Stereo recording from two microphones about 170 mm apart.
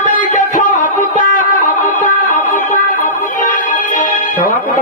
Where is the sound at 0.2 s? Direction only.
50° left (ahead or behind).